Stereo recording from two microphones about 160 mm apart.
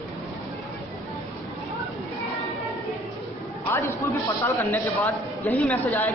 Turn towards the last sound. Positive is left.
turn(degrees=10)  # may be behind; listen again after turning